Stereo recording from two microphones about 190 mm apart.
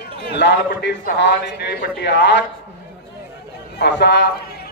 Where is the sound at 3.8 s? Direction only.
60° left (ahead or behind).